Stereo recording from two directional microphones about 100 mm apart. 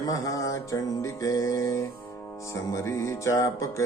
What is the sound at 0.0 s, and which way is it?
Music, 35° left (ahead or behind).